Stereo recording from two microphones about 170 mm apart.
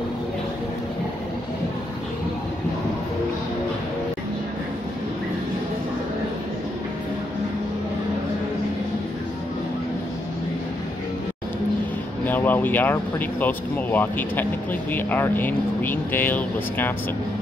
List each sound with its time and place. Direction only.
12.3 s speech: 10° left (ahead or behind)